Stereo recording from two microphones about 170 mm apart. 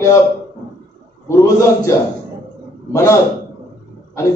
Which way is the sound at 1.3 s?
15° left (ahead or behind).